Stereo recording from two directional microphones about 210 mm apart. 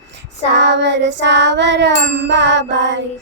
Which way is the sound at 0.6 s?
55° right (ahead or behind).